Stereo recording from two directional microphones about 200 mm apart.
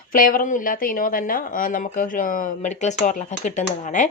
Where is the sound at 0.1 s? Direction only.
45° left (ahead or behind).